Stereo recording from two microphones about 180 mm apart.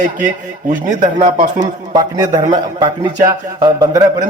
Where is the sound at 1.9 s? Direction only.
20° right (ahead or behind).